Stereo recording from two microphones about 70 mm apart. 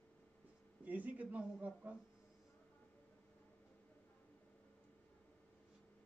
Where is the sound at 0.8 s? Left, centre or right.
Right.